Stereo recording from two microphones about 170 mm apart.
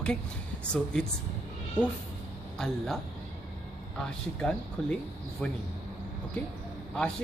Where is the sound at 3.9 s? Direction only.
5° left (ahead or behind).